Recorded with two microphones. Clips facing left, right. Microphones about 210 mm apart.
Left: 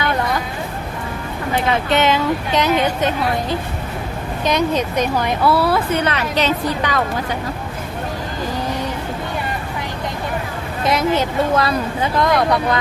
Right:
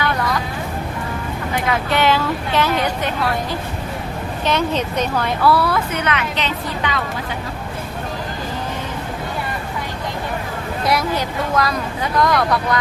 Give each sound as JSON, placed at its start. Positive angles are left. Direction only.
{"t": 1.6, "sound": "speech", "side_deg": 25}
{"t": 4.4, "sound": "speech", "side_deg": 15}
{"t": 10.8, "sound": "speech", "side_deg": 25}